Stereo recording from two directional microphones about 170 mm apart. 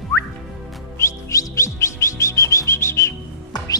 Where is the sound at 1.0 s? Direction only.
20° left (ahead or behind).